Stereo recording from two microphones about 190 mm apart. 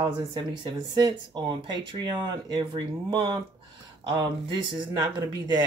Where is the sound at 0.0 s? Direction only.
25° right (ahead or behind).